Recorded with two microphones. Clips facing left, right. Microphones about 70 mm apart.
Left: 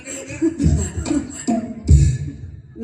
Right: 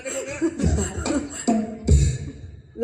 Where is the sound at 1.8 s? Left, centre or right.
Right.